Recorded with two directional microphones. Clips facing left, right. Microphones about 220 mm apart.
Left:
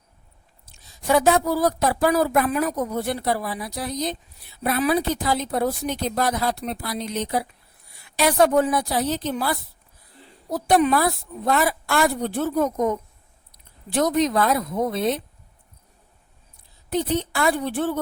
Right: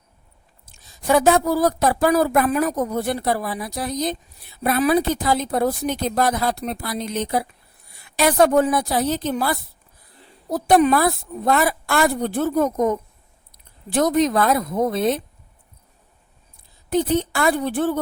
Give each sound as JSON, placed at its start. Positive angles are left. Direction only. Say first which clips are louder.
{"t": 0.6, "sound": "a woman's voice", "louder": "right 4 dB", "side_deg": -45}
{"t": 13.9, "sound": "a woman's voice", "louder": "right 2 dB", "side_deg": -45}
{"t": 16.9, "sound": "a woman's voice", "louder": "right 4 dB", "side_deg": -50}